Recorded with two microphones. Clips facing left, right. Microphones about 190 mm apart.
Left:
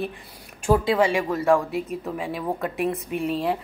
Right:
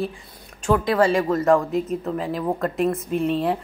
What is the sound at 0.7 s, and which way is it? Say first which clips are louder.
Speech: right 3 dB; 20° left (ahead or behind).